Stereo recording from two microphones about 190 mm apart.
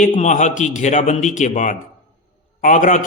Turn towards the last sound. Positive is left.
turn(degrees=40)  # may be behind; listen again after turning